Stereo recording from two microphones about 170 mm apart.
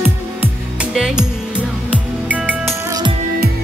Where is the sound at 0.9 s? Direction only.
5° right (ahead or behind).